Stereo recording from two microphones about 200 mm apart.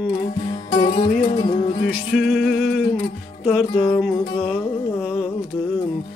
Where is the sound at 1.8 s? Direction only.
50° left (ahead or behind).